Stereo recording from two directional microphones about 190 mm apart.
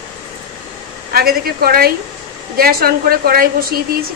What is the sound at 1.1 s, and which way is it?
A woman's voice, 50° right (ahead or behind).